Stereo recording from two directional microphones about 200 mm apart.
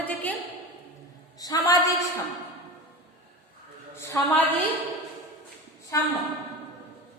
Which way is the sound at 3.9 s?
15° left (ahead or behind).